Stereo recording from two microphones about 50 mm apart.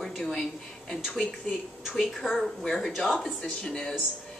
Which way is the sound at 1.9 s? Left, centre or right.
Centre.